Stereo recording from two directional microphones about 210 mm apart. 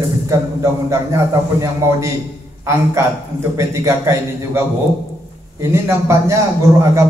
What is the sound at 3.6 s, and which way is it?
Speech, 15° right (ahead or behind).